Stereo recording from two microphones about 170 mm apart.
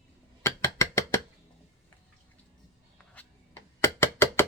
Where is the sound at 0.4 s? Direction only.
15° left (ahead or behind).